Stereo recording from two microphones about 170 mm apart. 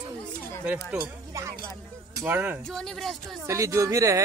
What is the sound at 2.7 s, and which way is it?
Speech, centre (ahead or behind).